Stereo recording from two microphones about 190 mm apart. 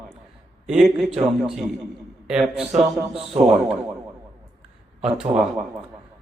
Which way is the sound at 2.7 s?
Centre (ahead or behind).